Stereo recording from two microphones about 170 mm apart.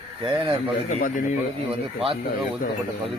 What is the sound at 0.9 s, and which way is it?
Speech, 50° left (ahead or behind).